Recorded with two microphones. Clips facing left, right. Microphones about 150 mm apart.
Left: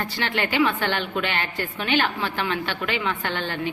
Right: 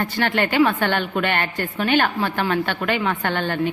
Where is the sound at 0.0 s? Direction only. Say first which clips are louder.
Right 5 dB; 50° right (ahead or behind).